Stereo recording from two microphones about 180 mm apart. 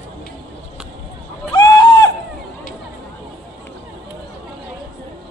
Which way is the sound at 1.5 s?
25° left (ahead or behind).